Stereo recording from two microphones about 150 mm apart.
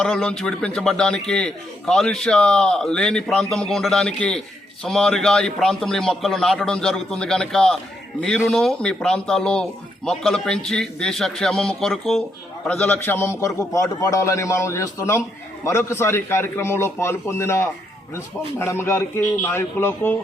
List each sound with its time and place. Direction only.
0.0 s a man's voice: 5° left (ahead or behind)